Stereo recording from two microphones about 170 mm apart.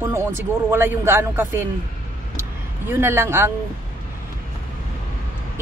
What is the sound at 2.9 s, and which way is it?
Speech, 15° right (ahead or behind).